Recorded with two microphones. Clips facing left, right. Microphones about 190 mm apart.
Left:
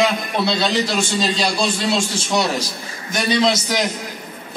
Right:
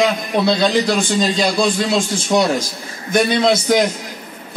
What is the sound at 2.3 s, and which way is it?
A man's voice, 50° right (ahead or behind).